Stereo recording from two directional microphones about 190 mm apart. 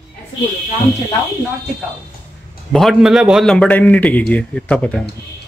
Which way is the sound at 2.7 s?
Centre (ahead or behind).